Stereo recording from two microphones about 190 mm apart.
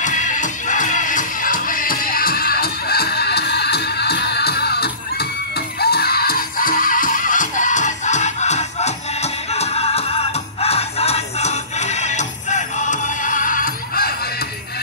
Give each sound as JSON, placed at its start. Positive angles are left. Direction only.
{"t": 0.0, "sound": "music", "side_deg": 40}